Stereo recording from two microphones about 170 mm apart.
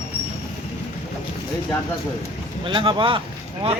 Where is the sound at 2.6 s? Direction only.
30° right (ahead or behind).